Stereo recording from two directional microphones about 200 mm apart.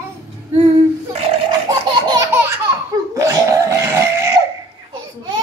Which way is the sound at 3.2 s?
15° right (ahead or behind).